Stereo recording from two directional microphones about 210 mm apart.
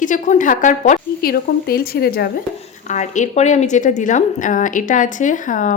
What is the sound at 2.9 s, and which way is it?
A woman's voice, 35° left (ahead or behind).